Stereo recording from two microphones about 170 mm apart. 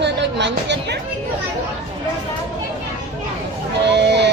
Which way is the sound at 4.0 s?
90° right.